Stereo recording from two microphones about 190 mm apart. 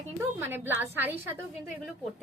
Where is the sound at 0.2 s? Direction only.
10° right (ahead or behind).